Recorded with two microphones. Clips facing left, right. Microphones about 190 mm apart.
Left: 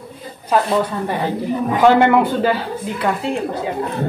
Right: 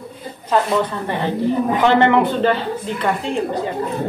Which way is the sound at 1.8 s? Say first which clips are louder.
Left 3 dB; 10° left (ahead or behind).